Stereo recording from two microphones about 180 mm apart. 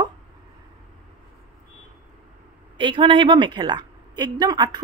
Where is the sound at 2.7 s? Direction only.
25° right (ahead or behind).